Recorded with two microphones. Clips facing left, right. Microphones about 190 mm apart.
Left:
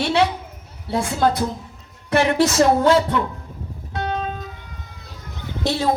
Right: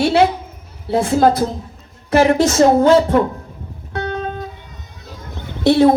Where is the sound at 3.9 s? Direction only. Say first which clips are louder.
Right 3 dB; 55° right (ahead or behind).